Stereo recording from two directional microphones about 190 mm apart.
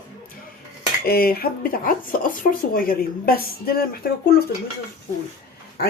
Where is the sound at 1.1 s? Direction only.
50° left (ahead or behind).